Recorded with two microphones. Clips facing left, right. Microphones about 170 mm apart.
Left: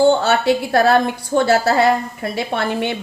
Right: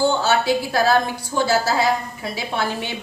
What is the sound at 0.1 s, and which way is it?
A woman's voice, 55° left (ahead or behind).